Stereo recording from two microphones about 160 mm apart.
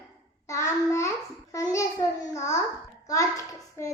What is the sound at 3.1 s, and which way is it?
Hands, 20° left (ahead or behind).